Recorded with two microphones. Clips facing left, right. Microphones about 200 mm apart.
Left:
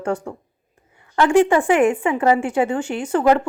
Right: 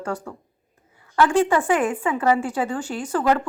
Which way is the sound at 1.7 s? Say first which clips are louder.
Left 5 dB; 25° left (ahead or behind).